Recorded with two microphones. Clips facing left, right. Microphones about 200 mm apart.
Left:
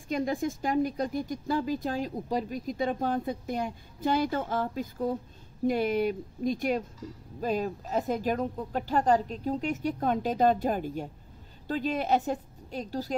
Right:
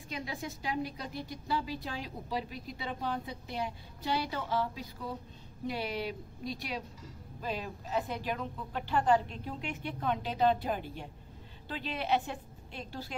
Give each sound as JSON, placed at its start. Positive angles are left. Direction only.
{"t": 0.1, "sound": "a woman's voice", "side_deg": 45}